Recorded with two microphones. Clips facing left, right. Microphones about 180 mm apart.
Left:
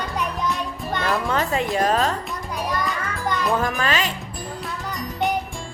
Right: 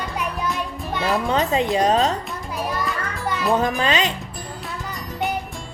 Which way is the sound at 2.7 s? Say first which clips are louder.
Left 2 dB; 5° right (ahead or behind).